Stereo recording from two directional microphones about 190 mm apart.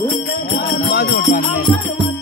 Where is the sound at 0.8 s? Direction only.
60° left (ahead or behind).